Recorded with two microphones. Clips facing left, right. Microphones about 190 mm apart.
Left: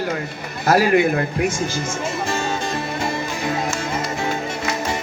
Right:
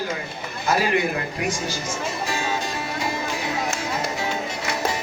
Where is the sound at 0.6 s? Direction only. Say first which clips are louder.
Left 6 dB; 60° left (ahead or behind).